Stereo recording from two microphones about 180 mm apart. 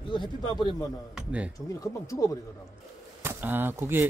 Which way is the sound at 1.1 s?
5° right (ahead or behind).